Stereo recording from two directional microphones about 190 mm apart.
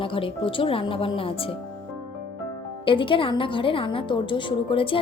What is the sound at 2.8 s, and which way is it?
A woman's voice, 25° left (ahead or behind).